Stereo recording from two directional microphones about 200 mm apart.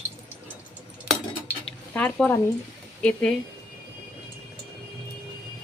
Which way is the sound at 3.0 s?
5° left (ahead or behind).